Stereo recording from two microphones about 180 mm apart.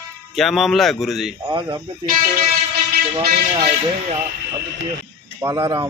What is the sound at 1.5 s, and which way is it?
Speech, 25° right (ahead or behind).